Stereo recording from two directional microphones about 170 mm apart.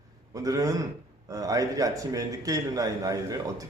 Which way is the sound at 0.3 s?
20° right (ahead or behind).